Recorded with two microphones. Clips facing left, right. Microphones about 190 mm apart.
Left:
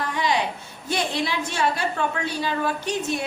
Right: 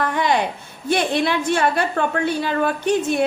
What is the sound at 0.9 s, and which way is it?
A woman's voice, 60° right (ahead or behind).